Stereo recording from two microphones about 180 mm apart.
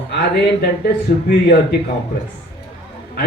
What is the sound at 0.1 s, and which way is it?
A man's voice, 60° left (ahead or behind).